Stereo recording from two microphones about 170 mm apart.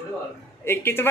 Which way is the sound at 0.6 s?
15° left (ahead or behind).